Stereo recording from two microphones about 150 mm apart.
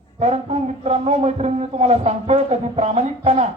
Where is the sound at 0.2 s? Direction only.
45° right (ahead or behind).